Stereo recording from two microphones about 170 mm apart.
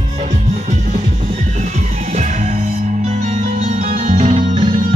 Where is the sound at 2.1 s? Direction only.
45° right (ahead or behind).